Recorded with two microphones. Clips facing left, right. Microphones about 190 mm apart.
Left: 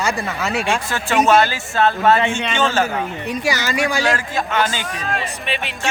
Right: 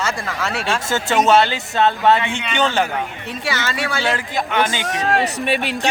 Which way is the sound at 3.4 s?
15° left (ahead or behind).